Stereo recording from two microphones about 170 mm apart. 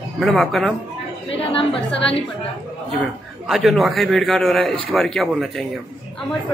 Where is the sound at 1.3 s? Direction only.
35° left (ahead or behind).